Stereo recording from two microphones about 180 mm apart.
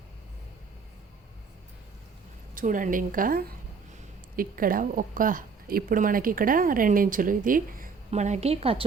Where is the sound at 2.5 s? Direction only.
45° right (ahead or behind).